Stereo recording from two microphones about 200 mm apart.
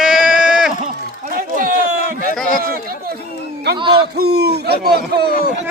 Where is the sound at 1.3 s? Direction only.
45° right (ahead or behind).